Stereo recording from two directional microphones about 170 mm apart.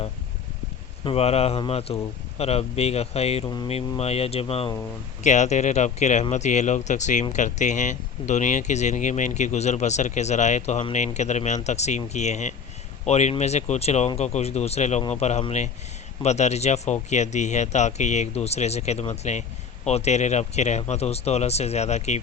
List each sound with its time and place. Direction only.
1.0 s speech: 35° left (ahead or behind)
3.4 s speech: 25° left (ahead or behind)
3.7 s speech: 35° left (ahead or behind)